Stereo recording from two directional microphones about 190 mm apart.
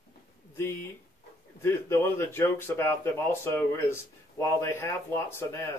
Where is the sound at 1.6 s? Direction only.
15° left (ahead or behind).